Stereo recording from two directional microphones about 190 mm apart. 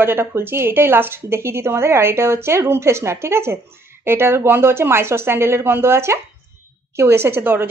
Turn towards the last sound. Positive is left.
turn(degrees=-10)  # may be behind; listen again after turning